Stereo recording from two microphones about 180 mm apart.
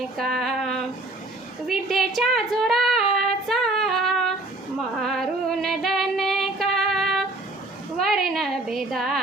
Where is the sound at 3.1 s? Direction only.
Centre (ahead or behind).